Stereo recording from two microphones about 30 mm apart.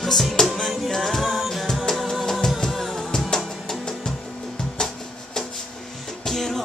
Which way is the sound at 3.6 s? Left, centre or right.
Centre.